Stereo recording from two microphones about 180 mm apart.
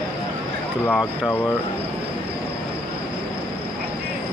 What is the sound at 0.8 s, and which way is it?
Speech, 10° left (ahead or behind).